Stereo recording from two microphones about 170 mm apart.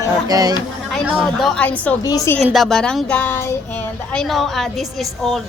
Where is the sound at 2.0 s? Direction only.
20° left (ahead or behind).